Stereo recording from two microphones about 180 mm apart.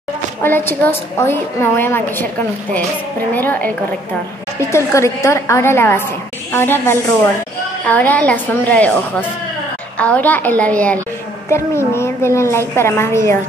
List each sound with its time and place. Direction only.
0.4 s a woman's voice: 10° left (ahead or behind)